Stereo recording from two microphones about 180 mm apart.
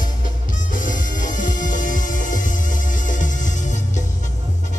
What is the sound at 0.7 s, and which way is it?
Music, 45° left (ahead or behind).